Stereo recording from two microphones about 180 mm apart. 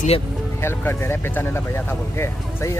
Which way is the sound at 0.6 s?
15° left (ahead or behind).